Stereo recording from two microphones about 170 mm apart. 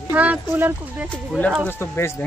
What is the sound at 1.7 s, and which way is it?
Speech, 15° left (ahead or behind).